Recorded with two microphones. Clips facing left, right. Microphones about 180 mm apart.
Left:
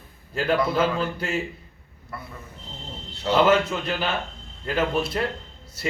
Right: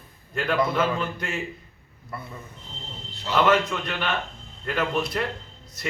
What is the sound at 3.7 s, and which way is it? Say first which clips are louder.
A man's voice: left 2 dB; 30° left (ahead or behind).